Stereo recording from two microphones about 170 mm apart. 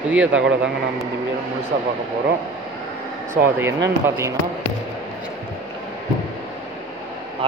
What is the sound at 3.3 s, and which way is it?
A man's voice, 15° right (ahead or behind).